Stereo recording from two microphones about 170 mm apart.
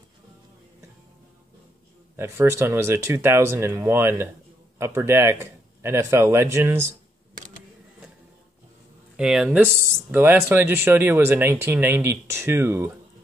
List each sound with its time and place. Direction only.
2.1 s speech: 15° right (ahead or behind)
9.1 s speech: 5° right (ahead or behind)